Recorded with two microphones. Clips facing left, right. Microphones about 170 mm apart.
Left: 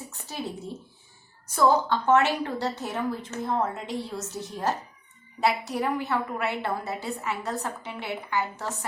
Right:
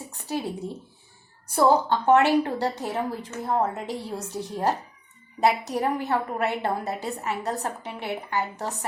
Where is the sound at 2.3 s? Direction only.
35° right (ahead or behind).